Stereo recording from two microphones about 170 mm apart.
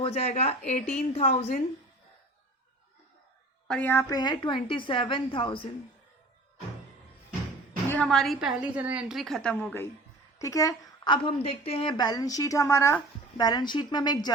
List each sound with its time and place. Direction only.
0.0 s a woman's voice: 35° left (ahead or behind)
3.7 s a woman's voice: 10° left (ahead or behind)
4.1 s a woman's voice: 25° left (ahead or behind)
7.9 s a woman's voice: 5° left (ahead or behind); by 14.3 s 25° left (ahead or behind)